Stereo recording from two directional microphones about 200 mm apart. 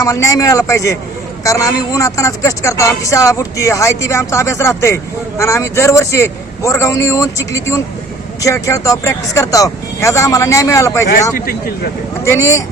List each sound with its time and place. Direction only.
0.0 s speech: 15° left (ahead or behind)
11.3 s speech: 45° left (ahead or behind)
12.2 s speech: 15° left (ahead or behind)